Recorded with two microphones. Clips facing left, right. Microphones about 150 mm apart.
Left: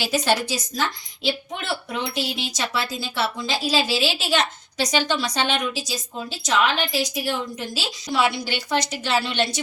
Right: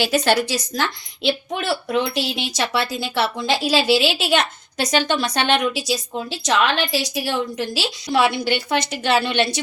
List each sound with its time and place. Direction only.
0.0 s a woman's voice: 70° right (ahead or behind)
5.9 s a woman's voice: 75° right (ahead or behind)